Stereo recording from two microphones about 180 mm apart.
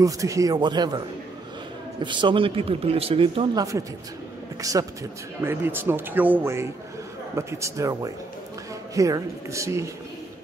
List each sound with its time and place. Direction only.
0.0 s speech: 20° right (ahead or behind)
2.0 s speech: 25° right (ahead or behind)
4.6 s speech: 20° right (ahead or behind)